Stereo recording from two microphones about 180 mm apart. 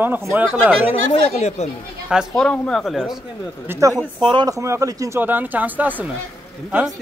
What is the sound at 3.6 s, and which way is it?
Speech, 15° right (ahead or behind).